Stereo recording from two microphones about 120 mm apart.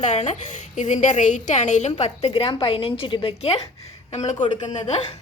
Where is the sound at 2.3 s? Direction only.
50° left (ahead or behind).